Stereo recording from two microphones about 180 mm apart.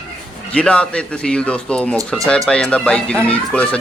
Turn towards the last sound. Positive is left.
turn(degrees=5)  # may be behind; listen again after turning